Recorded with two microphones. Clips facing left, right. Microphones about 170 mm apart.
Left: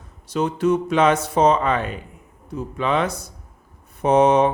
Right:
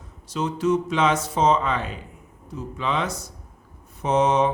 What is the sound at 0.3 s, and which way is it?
Speech, 55° left (ahead or behind).